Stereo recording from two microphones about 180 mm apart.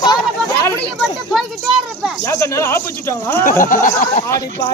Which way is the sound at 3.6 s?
50° left (ahead or behind).